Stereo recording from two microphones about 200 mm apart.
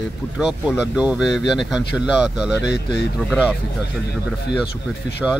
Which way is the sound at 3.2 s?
5° right (ahead or behind).